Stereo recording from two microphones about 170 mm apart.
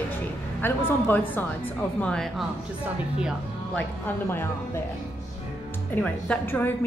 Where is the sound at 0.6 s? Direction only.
10° left (ahead or behind).